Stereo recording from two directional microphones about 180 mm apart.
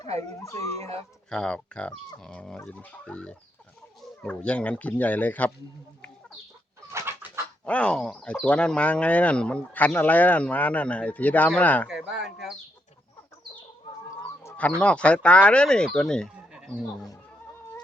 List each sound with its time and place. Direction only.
0.2 s speech: 15° left (ahead or behind)
0.8 s speech: 35° right (ahead or behind)
1.3 s speech: 5° left (ahead or behind)
6.9 s bird: 15° right (ahead or behind)
7.6 s speech: 5° left (ahead or behind)
11.9 s speech: centre (ahead or behind)
14.4 s chicken: 10° left (ahead or behind)
14.8 s speech: 5° left (ahead or behind)